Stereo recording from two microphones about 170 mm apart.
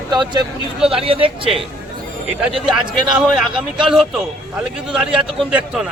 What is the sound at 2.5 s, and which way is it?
A man's voice, centre (ahead or behind).